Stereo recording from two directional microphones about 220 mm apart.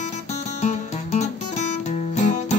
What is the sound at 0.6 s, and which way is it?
Music, 30° left (ahead or behind).